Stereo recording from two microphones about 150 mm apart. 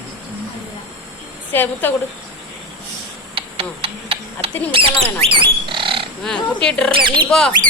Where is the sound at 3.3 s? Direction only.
40° right (ahead or behind).